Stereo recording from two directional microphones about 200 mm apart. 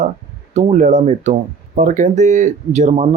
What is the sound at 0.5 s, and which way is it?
Speech, 40° right (ahead or behind).